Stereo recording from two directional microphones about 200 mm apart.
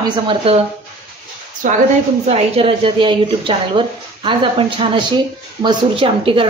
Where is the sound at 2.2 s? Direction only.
30° right (ahead or behind).